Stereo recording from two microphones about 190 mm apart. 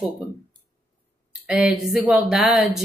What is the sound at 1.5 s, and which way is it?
Speech, 5° right (ahead or behind).